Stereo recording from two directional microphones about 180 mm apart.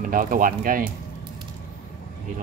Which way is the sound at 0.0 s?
50° right (ahead or behind).